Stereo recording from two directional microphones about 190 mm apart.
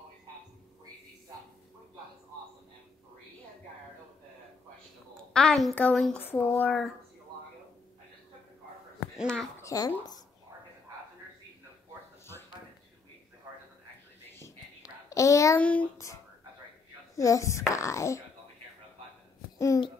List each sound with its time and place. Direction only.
5.3 s speech: centre (ahead or behind)
9.1 s speech: centre (ahead or behind)
9.6 s speech: 15° left (ahead or behind)
14.4 s a sound: 15° left (ahead or behind)
17.2 s speech: 15° left (ahead or behind)